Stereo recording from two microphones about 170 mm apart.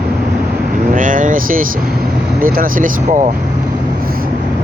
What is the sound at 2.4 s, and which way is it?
Speech, 55° right (ahead or behind).